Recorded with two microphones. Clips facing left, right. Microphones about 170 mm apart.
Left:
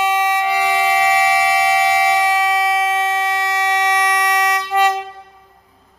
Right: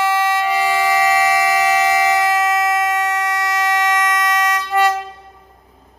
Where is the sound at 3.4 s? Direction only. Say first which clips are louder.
Even; 20° left (ahead or behind).